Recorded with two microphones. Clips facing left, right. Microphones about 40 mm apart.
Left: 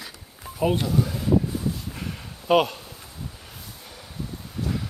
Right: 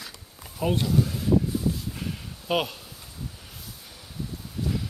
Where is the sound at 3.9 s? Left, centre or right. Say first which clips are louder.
Left 1 dB; centre.